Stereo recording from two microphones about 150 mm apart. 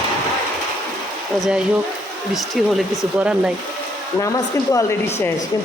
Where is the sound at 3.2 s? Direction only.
5° right (ahead or behind).